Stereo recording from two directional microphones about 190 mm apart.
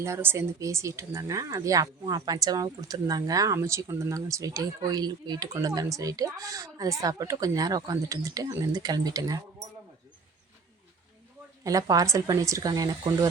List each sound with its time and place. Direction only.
0.0 s speech: 15° right (ahead or behind)
11.6 s speech: 20° right (ahead or behind)